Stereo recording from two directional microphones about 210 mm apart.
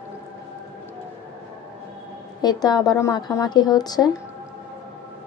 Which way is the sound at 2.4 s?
20° left (ahead or behind).